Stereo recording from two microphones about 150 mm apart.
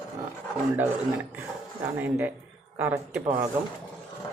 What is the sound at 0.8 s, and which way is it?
A woman's voice, 10° right (ahead or behind).